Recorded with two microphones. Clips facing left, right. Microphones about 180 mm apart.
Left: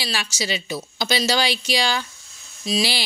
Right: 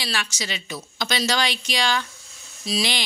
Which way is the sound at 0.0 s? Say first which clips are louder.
Left 2 dB; 5° left (ahead or behind).